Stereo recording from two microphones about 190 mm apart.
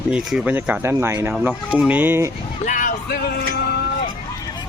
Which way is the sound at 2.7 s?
45° left (ahead or behind).